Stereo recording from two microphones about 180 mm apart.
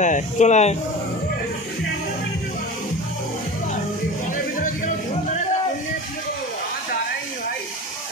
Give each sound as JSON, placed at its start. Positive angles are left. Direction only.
{"t": 0.0, "sound": "speech", "side_deg": 40}
{"t": 4.6, "sound": "music", "side_deg": 45}